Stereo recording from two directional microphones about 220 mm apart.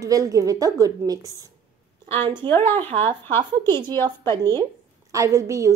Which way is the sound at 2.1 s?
25° right (ahead or behind).